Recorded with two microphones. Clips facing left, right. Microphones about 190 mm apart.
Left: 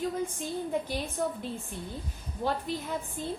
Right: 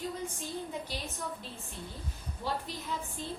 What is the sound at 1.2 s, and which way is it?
Speech, 55° left (ahead or behind).